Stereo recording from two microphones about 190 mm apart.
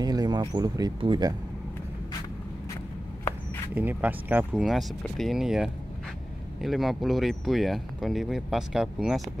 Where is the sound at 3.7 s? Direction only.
10° right (ahead or behind).